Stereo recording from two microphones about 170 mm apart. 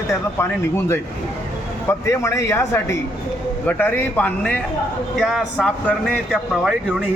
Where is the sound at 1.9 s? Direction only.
15° left (ahead or behind).